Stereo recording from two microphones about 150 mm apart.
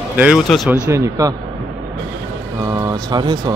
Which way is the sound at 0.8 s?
20° right (ahead or behind).